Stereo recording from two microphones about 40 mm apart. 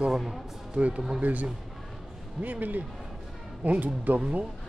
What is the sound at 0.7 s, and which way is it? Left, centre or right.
Speech, right.